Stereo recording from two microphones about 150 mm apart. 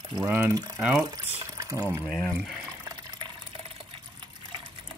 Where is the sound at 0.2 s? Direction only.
20° right (ahead or behind).